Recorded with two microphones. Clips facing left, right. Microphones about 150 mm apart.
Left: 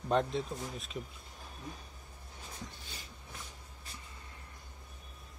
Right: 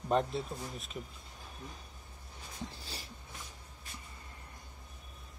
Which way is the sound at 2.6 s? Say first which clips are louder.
Right 4 dB; 35° right (ahead or behind).